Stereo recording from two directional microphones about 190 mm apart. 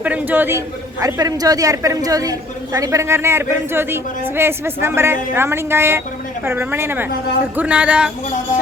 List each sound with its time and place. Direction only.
0.0 s a man's voice: 10° right (ahead or behind)